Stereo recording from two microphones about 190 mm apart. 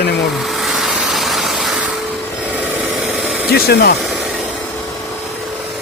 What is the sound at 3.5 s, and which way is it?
Speech, 55° left (ahead or behind).